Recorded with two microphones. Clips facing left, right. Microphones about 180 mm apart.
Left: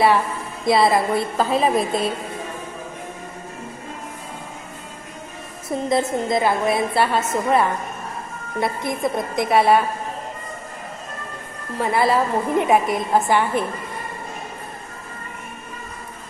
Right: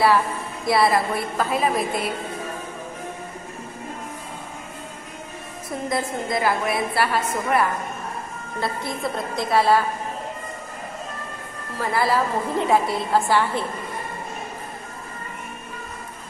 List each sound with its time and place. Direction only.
0.6 s a woman's voice: 20° left (ahead or behind)
5.6 s a woman's voice: 25° left (ahead or behind)
8.6 s a woman's voice: 20° left (ahead or behind)
11.8 s a woman's voice: 20° left (ahead or behind)